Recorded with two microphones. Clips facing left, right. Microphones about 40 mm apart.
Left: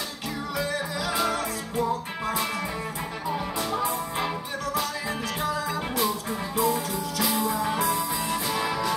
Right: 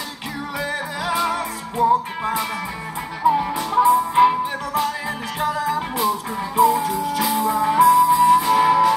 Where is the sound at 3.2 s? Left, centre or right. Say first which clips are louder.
Right 12 dB; right.